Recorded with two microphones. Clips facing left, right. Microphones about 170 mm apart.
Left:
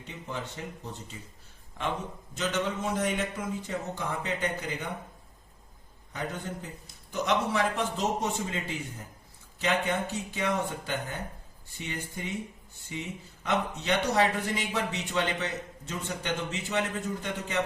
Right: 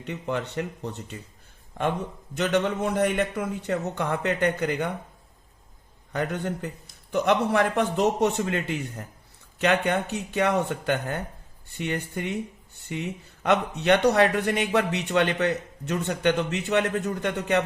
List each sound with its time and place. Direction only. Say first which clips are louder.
0.0 s speech: right 8 dB; 70° right (ahead or behind)
2.3 s speech: right 6 dB; 65° right (ahead or behind)
6.1 s speech: right 7 dB; 65° right (ahead or behind)